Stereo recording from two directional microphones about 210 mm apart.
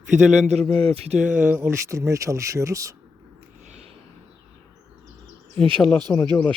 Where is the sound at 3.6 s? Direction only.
30° right (ahead or behind).